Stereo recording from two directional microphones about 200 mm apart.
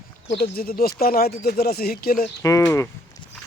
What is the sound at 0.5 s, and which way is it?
Speech, 50° left (ahead or behind).